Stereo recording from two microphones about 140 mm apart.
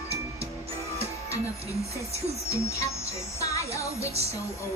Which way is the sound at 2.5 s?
20° left (ahead or behind).